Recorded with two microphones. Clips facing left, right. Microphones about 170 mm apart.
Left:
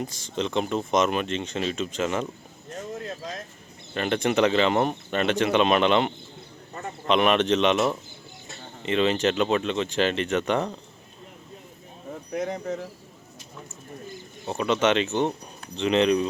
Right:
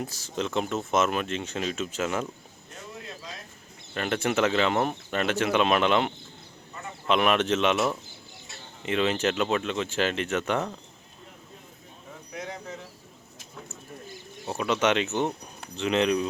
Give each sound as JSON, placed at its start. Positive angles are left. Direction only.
{"t": 0.0, "sound": "speech", "side_deg": -5}
{"t": 2.6, "sound": "a sound", "side_deg": 45}
{"t": 3.9, "sound": "speech", "side_deg": -5}
{"t": 6.8, "sound": "a sound", "side_deg": 45}
{"t": 7.1, "sound": "speech", "side_deg": -5}
{"t": 8.9, "sound": "speech", "side_deg": -5}
{"t": 12.3, "sound": "speech", "side_deg": 50}
{"t": 14.4, "sound": "speech", "side_deg": -5}